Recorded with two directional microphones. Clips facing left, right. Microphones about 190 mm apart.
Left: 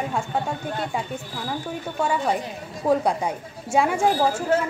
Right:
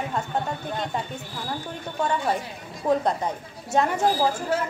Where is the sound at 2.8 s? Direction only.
10° left (ahead or behind).